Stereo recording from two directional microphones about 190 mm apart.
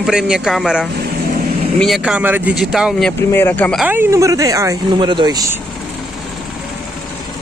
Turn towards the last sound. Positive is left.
turn(degrees=-20)  # may be behind; listen again after turning